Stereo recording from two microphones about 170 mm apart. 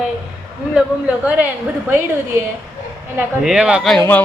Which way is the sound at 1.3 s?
10° right (ahead or behind).